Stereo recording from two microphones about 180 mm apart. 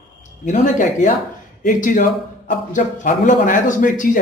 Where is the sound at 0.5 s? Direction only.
45° left (ahead or behind).